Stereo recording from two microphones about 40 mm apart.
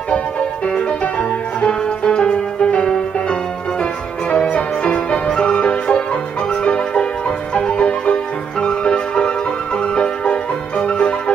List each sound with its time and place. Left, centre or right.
1.7 s music: centre
9.9 s marimba: left